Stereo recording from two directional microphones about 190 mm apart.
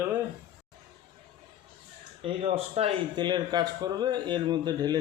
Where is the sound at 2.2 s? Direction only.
30° right (ahead or behind).